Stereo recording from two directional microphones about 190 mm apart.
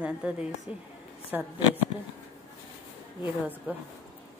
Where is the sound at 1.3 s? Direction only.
10° right (ahead or behind).